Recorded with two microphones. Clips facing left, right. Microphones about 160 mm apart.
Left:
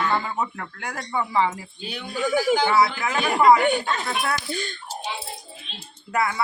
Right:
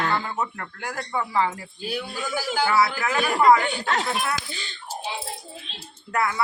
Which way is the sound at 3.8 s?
90° right.